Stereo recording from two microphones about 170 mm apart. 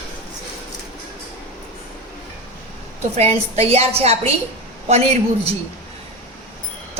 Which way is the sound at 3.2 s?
40° right (ahead or behind).